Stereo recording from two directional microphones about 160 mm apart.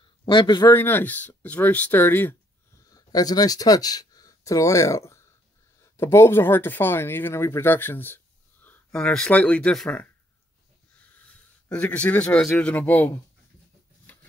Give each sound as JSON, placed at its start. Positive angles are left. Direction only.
{"t": 0.2, "sound": "a man's voice", "side_deg": 30}
{"t": 0.7, "sound": "speech", "side_deg": 15}
{"t": 2.9, "sound": "speech", "side_deg": 25}
{"t": 11.7, "sound": "speech", "side_deg": 10}
{"t": 14.1, "sound": "a sound", "side_deg": 10}